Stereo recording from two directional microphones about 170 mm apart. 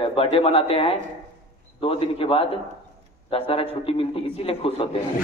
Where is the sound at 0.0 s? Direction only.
35° left (ahead or behind).